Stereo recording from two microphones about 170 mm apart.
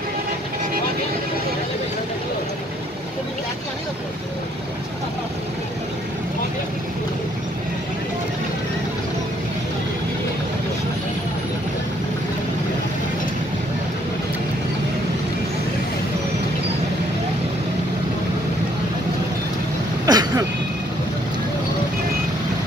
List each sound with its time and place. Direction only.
20.1 s vehicle: 20° right (ahead or behind)